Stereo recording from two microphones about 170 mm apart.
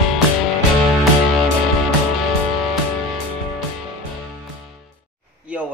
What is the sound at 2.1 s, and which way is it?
Music, centre (ahead or behind).